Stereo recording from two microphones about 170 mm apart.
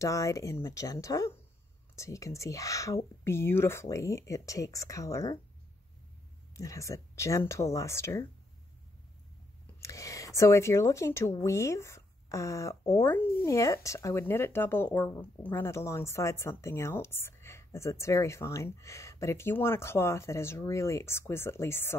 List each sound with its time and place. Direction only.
0.0 s speech: 20° left (ahead or behind)
6.5 s speech: 20° left (ahead or behind)
9.8 s speech: 20° left (ahead or behind)